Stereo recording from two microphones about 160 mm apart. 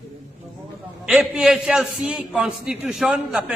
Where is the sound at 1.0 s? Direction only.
5° right (ahead or behind).